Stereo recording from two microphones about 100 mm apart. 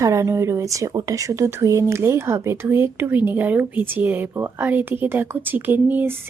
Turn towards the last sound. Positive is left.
turn(degrees=-20)  # may be behind; listen again after turning